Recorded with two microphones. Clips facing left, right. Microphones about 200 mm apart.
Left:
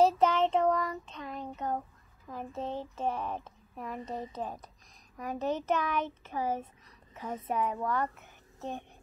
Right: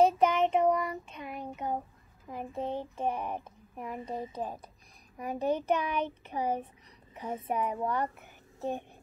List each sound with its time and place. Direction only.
0.0 s child singing: 15° right (ahead or behind)
2.2 s a child's voice: 20° right (ahead or behind)
7.2 s a child's voice: 25° right (ahead or behind)
7.4 s a child's voice: 15° right (ahead or behind)